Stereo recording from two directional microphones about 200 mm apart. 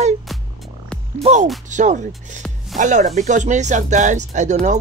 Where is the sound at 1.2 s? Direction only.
35° right (ahead or behind).